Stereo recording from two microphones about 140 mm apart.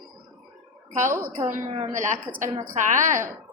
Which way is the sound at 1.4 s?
60° right (ahead or behind).